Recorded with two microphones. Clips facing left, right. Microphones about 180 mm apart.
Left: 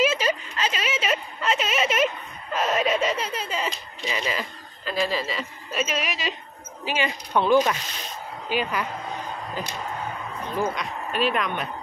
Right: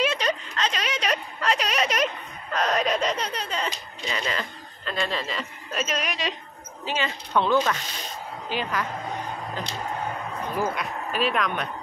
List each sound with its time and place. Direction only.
0.0 s a sound: 5° left (ahead or behind)
6.8 s a woman's voice: 15° left (ahead or behind)
10.6 s speech: 5° right (ahead or behind)